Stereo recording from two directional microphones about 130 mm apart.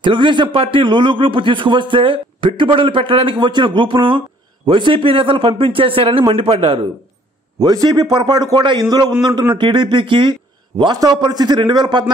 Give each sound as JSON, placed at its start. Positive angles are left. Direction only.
{"t": 0.0, "sound": "a man's voice", "side_deg": -40}
{"t": 7.6, "sound": "a man's voice", "side_deg": -30}